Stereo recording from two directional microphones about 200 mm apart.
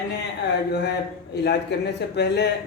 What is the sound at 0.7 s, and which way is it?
Speech, 55° left (ahead or behind).